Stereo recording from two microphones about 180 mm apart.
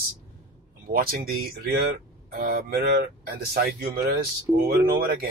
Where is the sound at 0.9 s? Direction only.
55° right (ahead or behind).